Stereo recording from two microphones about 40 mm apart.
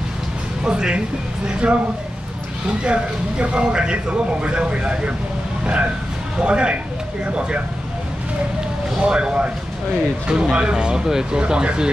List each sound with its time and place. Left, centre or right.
0.7 s speech: centre
2.8 s speech: right
6.4 s speech: right
9.0 s speech: right